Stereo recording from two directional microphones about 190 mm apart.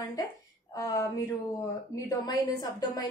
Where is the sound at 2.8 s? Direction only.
20° left (ahead or behind).